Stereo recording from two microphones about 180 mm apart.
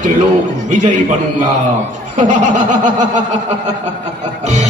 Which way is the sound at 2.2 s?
45° right (ahead or behind).